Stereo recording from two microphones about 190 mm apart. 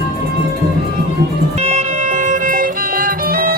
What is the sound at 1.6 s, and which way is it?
Music, 35° right (ahead or behind).